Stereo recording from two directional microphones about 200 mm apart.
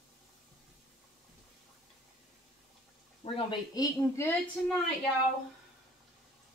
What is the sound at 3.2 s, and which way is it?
Speech, 30° left (ahead or behind).